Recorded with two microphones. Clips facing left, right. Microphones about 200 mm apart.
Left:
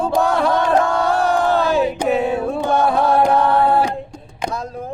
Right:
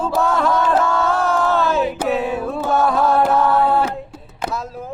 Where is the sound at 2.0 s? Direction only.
15° left (ahead or behind).